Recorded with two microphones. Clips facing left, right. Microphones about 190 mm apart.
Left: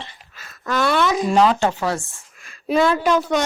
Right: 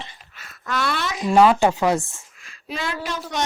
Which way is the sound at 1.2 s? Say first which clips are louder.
Right 5 dB; 5° right (ahead or behind).